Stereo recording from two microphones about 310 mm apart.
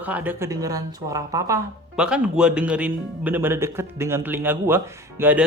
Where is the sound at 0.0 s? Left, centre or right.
Centre.